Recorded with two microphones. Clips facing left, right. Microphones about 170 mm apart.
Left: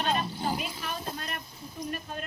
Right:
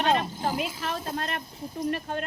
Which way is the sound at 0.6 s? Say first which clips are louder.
Right 5 dB; 90° right.